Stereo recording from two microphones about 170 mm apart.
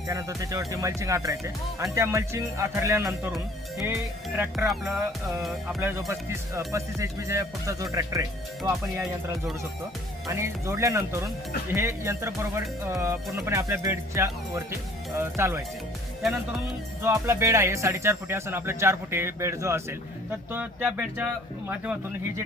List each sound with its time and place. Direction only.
0.1 s speech: 20° right (ahead or behind)
4.6 s speech: centre (ahead or behind)
5.8 s speech: 15° right (ahead or behind)
16.2 s speech: centre (ahead or behind)
17.0 s speech: 15° right (ahead or behind)